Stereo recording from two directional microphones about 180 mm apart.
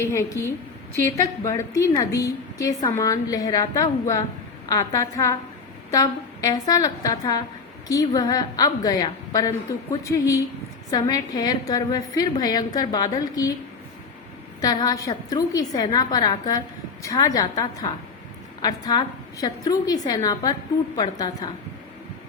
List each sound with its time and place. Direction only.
0.0 s a woman's voice: 15° left (ahead or behind)
14.6 s a woman's voice: 20° left (ahead or behind)